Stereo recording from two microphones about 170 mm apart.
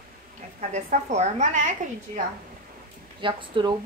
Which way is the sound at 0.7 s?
45° right (ahead or behind).